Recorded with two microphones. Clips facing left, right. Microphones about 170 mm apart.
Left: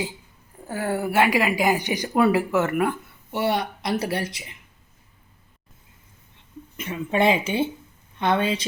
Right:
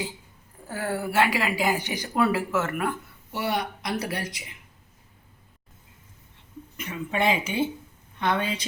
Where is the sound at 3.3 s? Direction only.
25° left (ahead or behind).